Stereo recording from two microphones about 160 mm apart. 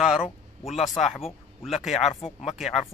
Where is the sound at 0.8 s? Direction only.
40° left (ahead or behind).